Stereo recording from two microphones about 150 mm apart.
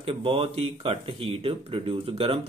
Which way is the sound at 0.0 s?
40° right (ahead or behind).